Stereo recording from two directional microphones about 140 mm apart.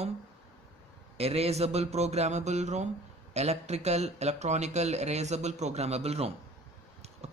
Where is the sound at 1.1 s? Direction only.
45° right (ahead or behind).